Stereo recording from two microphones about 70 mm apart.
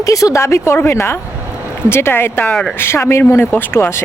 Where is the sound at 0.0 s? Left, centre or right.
Left.